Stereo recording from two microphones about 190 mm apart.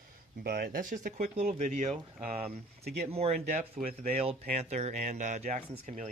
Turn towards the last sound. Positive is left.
turn(degrees=-40)  # may be behind; listen again after turning